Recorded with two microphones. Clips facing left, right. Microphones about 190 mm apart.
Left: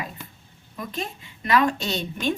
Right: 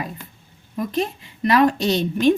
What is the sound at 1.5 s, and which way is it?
Speech, 40° right (ahead or behind).